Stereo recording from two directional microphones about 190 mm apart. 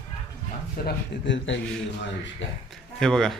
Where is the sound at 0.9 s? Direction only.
70° left (ahead or behind).